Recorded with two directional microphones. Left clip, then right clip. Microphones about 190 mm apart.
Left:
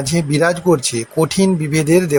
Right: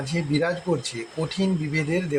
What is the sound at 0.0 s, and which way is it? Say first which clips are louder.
Speech: left 9 dB; 45° left (ahead or behind).